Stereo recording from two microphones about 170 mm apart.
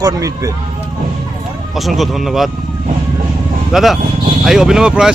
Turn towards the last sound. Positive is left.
turn(degrees=-5)  # may be behind; listen again after turning